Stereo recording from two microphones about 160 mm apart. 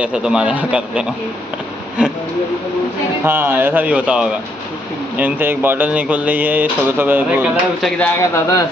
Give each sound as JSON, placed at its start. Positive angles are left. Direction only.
{"t": 0.0, "sound": "speech", "side_deg": -5}
{"t": 3.3, "sound": "speech", "side_deg": -15}
{"t": 8.0, "sound": "speech", "side_deg": 15}